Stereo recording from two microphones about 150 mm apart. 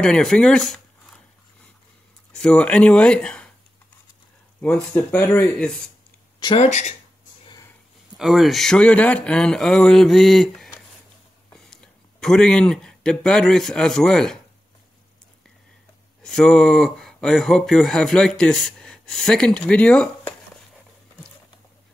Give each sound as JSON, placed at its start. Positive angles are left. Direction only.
{"t": 0.0, "sound": "speech", "side_deg": 5}
{"t": 2.3, "sound": "speech", "side_deg": 5}
{"t": 4.6, "sound": "speech", "side_deg": 10}
{"t": 6.4, "sound": "speech", "side_deg": 40}
{"t": 6.7, "sound": "speech", "side_deg": 50}
{"t": 8.2, "sound": "speech", "side_deg": 0}
{"t": 16.2, "sound": "speech", "side_deg": 5}